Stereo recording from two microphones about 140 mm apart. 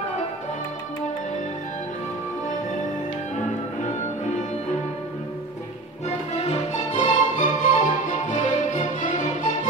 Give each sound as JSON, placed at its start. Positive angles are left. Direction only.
{"t": 6.0, "sound": "music", "side_deg": 50}